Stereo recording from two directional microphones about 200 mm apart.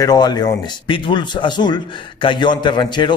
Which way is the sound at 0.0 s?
20° left (ahead or behind).